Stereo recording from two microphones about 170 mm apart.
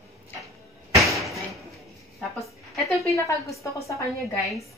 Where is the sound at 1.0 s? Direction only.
Centre (ahead or behind).